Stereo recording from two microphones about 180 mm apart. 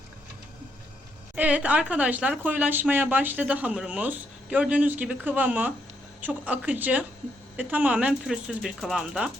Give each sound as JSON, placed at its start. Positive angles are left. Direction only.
{"t": 1.4, "sound": "speech", "side_deg": -5}